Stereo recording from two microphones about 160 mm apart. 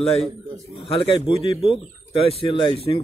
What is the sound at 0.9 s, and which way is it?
Speech, 35° left (ahead or behind).